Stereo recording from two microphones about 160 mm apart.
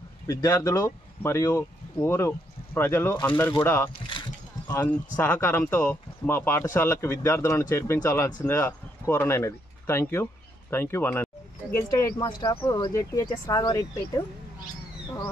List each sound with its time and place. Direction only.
0.3 s speech: 20° left (ahead or behind)
12.2 s speech: 30° left (ahead or behind)